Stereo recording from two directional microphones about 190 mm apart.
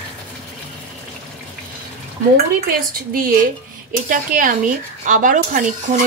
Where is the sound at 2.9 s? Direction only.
50° right (ahead or behind).